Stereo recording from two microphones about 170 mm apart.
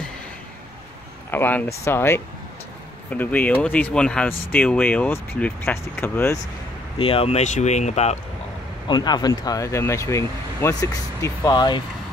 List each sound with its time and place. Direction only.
1.3 s speech: 10° left (ahead or behind)
7.0 s speech: 35° left (ahead or behind)
8.8 s speech: 25° left (ahead or behind)